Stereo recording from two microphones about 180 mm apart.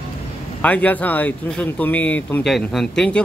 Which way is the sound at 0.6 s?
10° left (ahead or behind).